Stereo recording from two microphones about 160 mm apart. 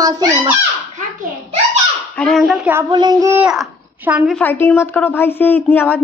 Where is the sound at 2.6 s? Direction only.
15° right (ahead or behind).